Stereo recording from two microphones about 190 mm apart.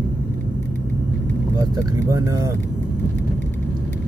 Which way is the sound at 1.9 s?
15° right (ahead or behind).